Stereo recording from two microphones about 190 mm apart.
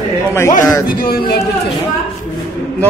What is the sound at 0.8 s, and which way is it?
Speech, 50° left (ahead or behind).